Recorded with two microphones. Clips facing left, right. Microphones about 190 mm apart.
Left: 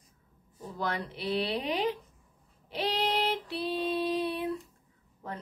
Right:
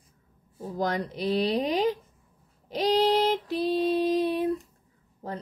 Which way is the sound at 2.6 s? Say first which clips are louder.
Right 8 dB; 40° right (ahead or behind).